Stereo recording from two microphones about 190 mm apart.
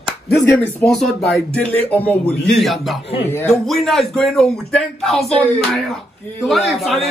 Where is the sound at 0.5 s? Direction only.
5° left (ahead or behind).